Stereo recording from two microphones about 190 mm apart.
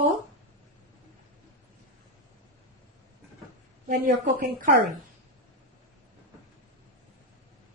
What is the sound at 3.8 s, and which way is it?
Speech, 45° right (ahead or behind).